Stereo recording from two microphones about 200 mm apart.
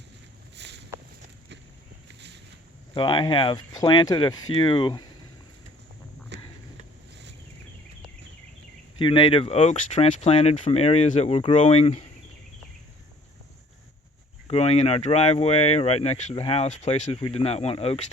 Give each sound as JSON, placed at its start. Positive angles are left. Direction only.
{"t": 0.5, "sound": "walk", "side_deg": -60}
{"t": 2.9, "sound": "speech", "side_deg": 25}
{"t": 6.3, "sound": "a sound", "side_deg": -60}
{"t": 9.0, "sound": "speech", "side_deg": 25}
{"t": 14.4, "sound": "speech", "side_deg": 30}